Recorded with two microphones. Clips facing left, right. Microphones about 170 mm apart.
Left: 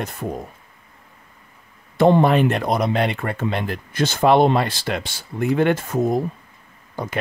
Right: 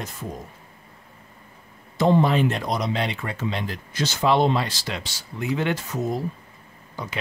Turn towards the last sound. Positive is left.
turn(degrees=50)  # may be behind; listen again after turning